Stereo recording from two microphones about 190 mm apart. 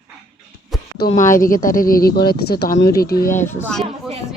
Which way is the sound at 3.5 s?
10° left (ahead or behind).